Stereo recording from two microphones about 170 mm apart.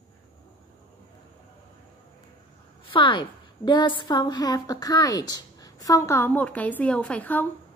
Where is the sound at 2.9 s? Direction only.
30° left (ahead or behind); by 7.5 s 10° left (ahead or behind).